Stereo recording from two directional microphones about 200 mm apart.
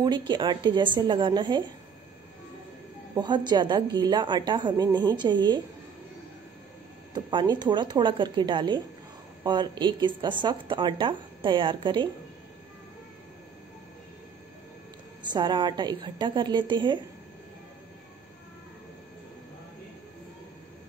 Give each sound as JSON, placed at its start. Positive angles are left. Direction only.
{"t": 0.3, "sound": "speech", "side_deg": -25}
{"t": 3.2, "sound": "speech", "side_deg": -20}
{"t": 7.2, "sound": "speech", "side_deg": -20}
{"t": 15.3, "sound": "speech", "side_deg": -25}